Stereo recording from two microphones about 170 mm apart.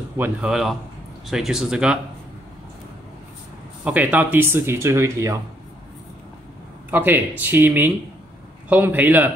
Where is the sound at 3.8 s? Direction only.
10° right (ahead or behind).